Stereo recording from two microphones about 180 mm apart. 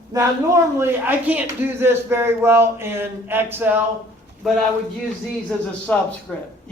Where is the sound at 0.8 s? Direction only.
10° right (ahead or behind).